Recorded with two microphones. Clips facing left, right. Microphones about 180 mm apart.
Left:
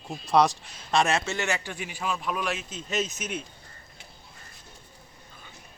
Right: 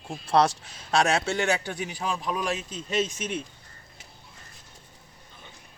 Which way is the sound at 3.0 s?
5° left (ahead or behind).